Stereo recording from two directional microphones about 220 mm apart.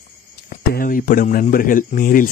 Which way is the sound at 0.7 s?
40° left (ahead or behind).